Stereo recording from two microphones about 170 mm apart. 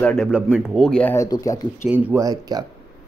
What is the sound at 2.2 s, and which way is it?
Speech, 20° right (ahead or behind).